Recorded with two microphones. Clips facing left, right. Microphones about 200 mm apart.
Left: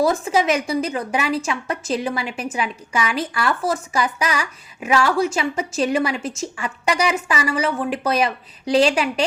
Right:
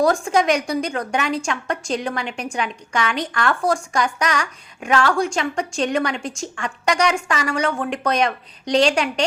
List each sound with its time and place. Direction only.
0.0 s a woman's voice: centre (ahead or behind)